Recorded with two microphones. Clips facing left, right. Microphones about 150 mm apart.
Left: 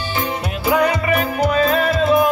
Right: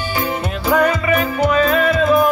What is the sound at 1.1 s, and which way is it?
Music, 40° left (ahead or behind).